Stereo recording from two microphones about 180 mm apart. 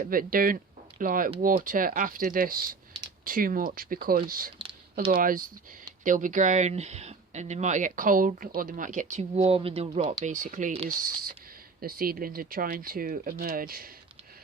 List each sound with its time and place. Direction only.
0.0 s speech: 50° right (ahead or behind); by 10.0 s 30° right (ahead or behind)
10.0 s speech: 45° right (ahead or behind)
10.8 s speech: 50° right (ahead or behind)